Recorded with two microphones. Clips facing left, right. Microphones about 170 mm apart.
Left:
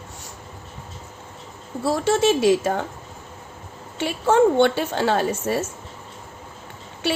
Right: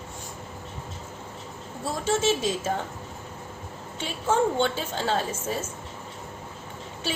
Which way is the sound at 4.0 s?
75° left (ahead or behind).